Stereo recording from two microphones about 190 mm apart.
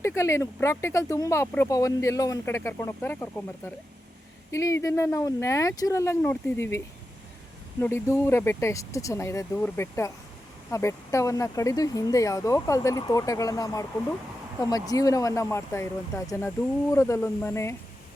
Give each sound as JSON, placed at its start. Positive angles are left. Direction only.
{"t": 0.0, "sound": "speech", "side_deg": 15}
{"t": 4.5, "sound": "speech", "side_deg": 15}